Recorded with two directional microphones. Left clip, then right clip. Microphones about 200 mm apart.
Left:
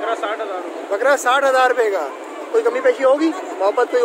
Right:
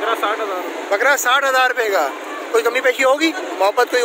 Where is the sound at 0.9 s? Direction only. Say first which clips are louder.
Right 1 dB; 25° left (ahead or behind).